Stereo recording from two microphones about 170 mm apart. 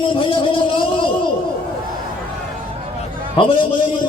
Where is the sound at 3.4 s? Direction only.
30° left (ahead or behind).